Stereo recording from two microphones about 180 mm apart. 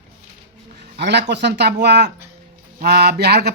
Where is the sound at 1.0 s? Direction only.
70° right (ahead or behind).